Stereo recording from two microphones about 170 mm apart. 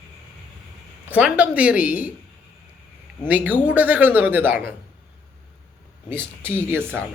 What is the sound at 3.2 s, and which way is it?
Speech, 10° right (ahead or behind).